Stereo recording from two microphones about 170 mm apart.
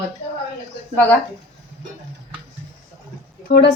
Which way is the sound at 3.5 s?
60° left (ahead or behind).